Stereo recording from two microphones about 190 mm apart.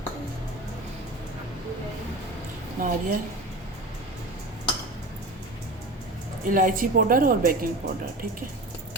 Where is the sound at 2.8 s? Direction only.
45° right (ahead or behind).